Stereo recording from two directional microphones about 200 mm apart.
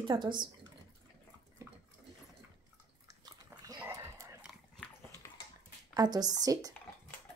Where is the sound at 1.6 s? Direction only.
15° right (ahead or behind).